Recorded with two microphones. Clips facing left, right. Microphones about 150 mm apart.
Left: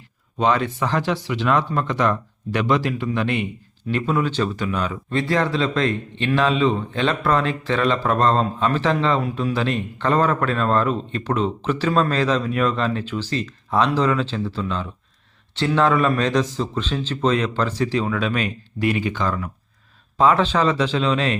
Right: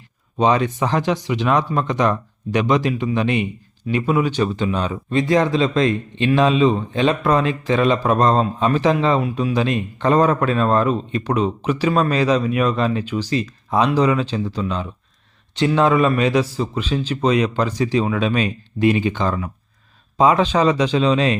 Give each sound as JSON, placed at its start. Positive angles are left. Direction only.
{"t": 0.3, "sound": "a man's voice", "side_deg": -20}
{"t": 5.0, "sound": "a man's voice", "side_deg": -15}